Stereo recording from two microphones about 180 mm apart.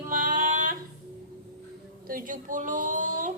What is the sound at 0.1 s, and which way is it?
Music, 45° right (ahead or behind).